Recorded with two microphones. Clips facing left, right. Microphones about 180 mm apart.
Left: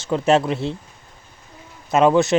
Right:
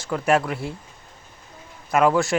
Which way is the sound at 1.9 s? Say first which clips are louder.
Left 4 dB; 25° left (ahead or behind).